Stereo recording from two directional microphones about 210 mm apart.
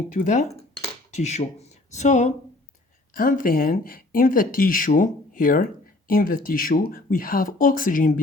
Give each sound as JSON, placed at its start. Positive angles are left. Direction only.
{"t": 0.1, "sound": "speech", "side_deg": 35}